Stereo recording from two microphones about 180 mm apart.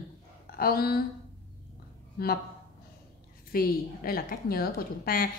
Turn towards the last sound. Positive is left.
turn(degrees=55)  # may be behind; listen again after turning